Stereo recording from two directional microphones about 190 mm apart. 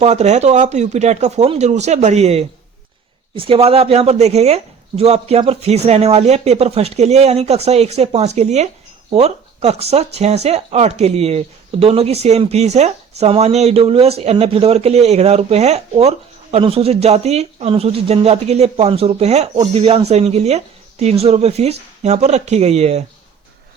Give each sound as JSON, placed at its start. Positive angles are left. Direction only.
{"t": 0.0, "sound": "speech", "side_deg": -35}